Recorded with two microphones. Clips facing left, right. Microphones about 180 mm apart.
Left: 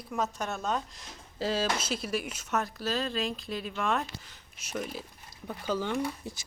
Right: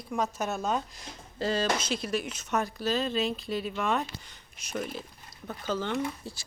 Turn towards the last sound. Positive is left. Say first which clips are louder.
# even
turn(degrees=20)  # may be behind; listen again after turning